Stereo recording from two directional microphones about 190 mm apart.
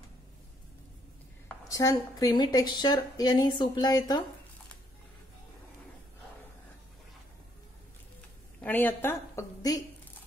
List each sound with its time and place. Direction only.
1.6 s a woman's voice: 15° left (ahead or behind)
8.5 s a woman's voice: 10° left (ahead or behind)